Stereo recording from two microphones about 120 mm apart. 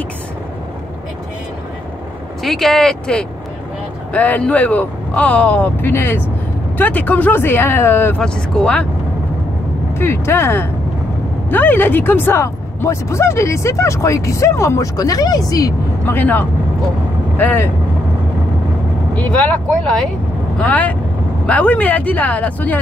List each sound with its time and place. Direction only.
2.4 s speech: centre (ahead or behind); by 8.2 s 20° left (ahead or behind)
8.2 s speech: 10° left (ahead or behind)
9.9 s speech: 20° left (ahead or behind)
16.1 s speech: 15° left (ahead or behind)
19.1 s speech: 10° left (ahead or behind)